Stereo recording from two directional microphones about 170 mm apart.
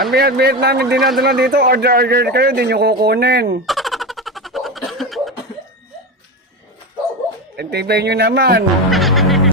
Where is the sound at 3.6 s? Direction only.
Centre (ahead or behind).